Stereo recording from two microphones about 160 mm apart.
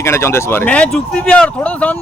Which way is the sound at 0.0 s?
15° left (ahead or behind).